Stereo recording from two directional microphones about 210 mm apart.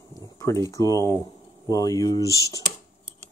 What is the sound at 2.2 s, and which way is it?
Speech, 15° right (ahead or behind).